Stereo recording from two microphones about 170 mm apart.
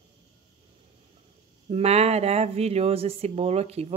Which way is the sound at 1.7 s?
40° right (ahead or behind).